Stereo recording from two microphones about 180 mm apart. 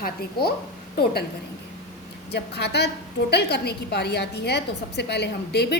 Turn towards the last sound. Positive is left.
turn(degrees=65)  # may be behind; listen again after turning